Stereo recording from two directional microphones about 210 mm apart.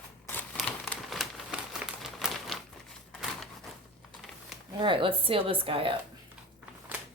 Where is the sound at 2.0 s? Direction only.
Centre (ahead or behind).